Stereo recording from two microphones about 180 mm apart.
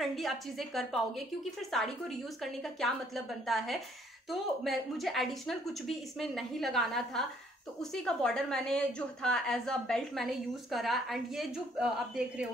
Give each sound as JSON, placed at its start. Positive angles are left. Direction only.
{"t": 0.0, "sound": "a woman's voice", "side_deg": 0}